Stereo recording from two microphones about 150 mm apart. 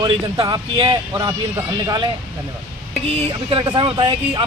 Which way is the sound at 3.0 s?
40° right (ahead or behind).